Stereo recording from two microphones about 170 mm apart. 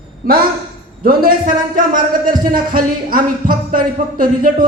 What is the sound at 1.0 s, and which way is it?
A man's voice, 55° right (ahead or behind).